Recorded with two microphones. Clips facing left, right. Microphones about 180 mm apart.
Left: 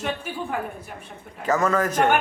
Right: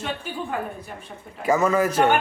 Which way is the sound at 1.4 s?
10° right (ahead or behind).